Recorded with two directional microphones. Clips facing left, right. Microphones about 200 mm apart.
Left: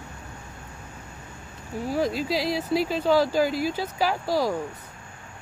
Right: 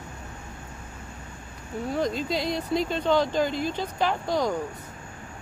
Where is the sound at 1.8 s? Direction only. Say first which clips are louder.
Left 2 dB; 5° left (ahead or behind).